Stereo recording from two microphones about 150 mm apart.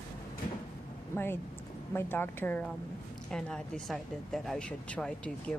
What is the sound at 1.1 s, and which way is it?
Speech, 15° left (ahead or behind).